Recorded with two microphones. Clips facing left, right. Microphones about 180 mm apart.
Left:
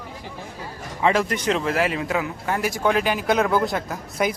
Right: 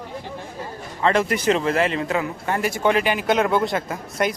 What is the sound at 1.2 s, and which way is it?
Speech, 5° right (ahead or behind).